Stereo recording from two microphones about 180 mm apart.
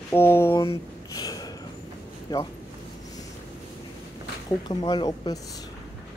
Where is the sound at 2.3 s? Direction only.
20° left (ahead or behind).